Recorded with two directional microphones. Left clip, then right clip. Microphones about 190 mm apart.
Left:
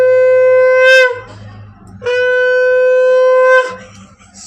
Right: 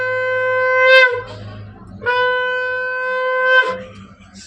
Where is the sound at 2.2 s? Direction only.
65° left (ahead or behind); by 3.4 s 80° left.